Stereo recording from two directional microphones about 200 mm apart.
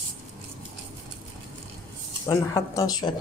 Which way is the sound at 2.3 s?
15° left (ahead or behind).